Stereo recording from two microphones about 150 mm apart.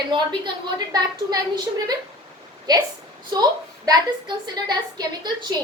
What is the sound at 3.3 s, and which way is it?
A woman's voice, 25° right (ahead or behind).